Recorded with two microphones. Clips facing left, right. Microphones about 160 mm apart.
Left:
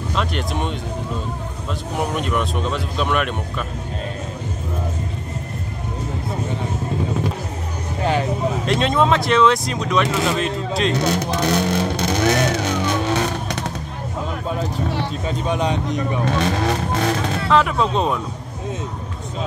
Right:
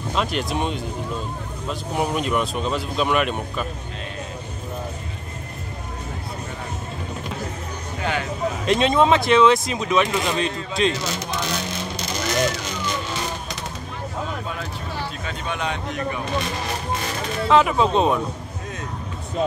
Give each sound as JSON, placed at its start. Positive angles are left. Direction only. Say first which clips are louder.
{"t": 0.1, "sound": "speech", "louder": "right 1 dB", "side_deg": 0}
{"t": 8.0, "sound": "speech", "louder": "left 6 dB", "side_deg": 35}
{"t": 8.6, "sound": "speech", "louder": "right 2 dB", "side_deg": 0}
{"t": 10.9, "sound": "vehicle", "louder": "left 6 dB", "side_deg": 65}
{"t": 15.2, "sound": "speech", "louder": "left 7 dB", "side_deg": 35}
{"t": 16.3, "sound": "speech", "louder": "left 6 dB", "side_deg": 70}
{"t": 17.5, "sound": "speech", "louder": "right 1 dB", "side_deg": -5}